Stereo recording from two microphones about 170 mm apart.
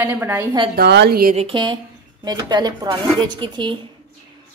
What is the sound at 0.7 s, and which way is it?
Speech, 75° right (ahead or behind).